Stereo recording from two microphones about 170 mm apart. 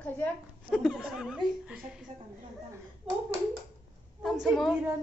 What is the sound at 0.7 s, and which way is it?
Speech, 5° right (ahead or behind).